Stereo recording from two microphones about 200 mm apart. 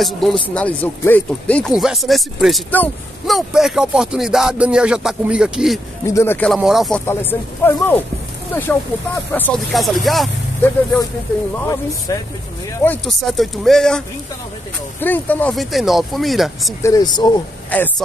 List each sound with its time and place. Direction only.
0.0 s speech: centre (ahead or behind)
6.0 s speech: 15° left (ahead or behind)
7.1 s speech: 10° left (ahead or behind)
10.6 s speech: 10° left (ahead or behind)
16.8 s speech: 20° left (ahead or behind)
17.6 s speech: 10° left (ahead or behind)